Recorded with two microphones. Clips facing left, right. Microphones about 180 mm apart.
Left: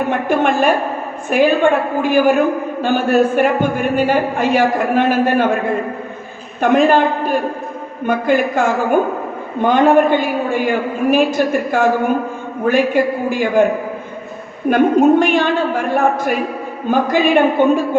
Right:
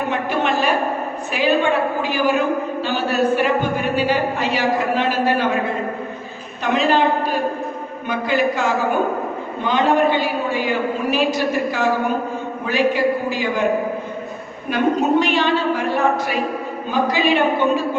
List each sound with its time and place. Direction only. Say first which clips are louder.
0.1 s a man's voice: left 5 dB; 50° left (ahead or behind)
6.6 s a man's voice: left 5 dB; 50° left (ahead or behind)
14.7 s a man's voice: left 6 dB; 50° left (ahead or behind)